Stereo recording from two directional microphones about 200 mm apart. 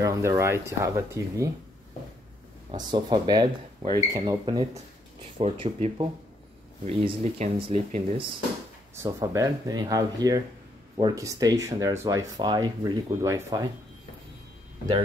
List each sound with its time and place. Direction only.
0.0 s speech: 15° right (ahead or behind)
2.9 s speech: 20° right (ahead or behind)
8.9 s speech: 15° right (ahead or behind)